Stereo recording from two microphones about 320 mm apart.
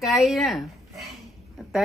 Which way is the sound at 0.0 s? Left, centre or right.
Centre.